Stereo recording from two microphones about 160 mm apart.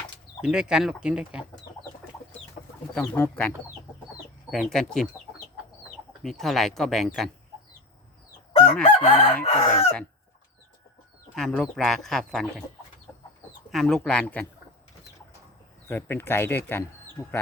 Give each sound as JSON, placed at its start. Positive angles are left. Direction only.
{"t": 0.4, "sound": "speech", "side_deg": -5}
{"t": 2.9, "sound": "speech", "side_deg": 10}
{"t": 4.5, "sound": "speech", "side_deg": 0}
{"t": 6.2, "sound": "speech", "side_deg": 0}
{"t": 9.0, "sound": "chicken", "side_deg": 35}
{"t": 11.3, "sound": "speech", "side_deg": 5}
{"t": 13.7, "sound": "speech", "side_deg": 0}
{"t": 15.9, "sound": "speech", "side_deg": 15}